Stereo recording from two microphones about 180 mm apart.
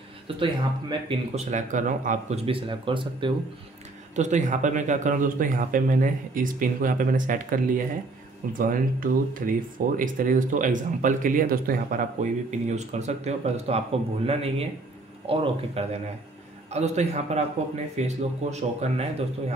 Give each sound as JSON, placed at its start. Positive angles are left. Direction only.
{"t": 0.4, "sound": "speech", "side_deg": -30}
{"t": 2.4, "sound": "speech", "side_deg": -30}
{"t": 4.1, "sound": "speech", "side_deg": -40}